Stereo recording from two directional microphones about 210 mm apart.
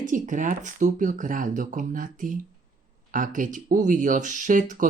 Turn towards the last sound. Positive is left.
turn(degrees=-40)  # may be behind; listen again after turning